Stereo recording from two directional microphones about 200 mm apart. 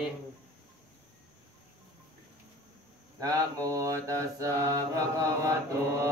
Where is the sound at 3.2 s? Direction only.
15° right (ahead or behind).